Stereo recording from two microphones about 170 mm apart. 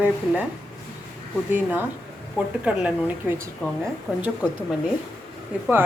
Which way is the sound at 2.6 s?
5° right (ahead or behind).